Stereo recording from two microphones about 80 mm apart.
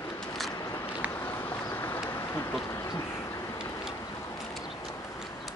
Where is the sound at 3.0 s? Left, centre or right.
Left.